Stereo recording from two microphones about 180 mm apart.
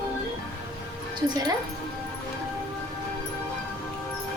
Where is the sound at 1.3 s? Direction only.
25° right (ahead or behind).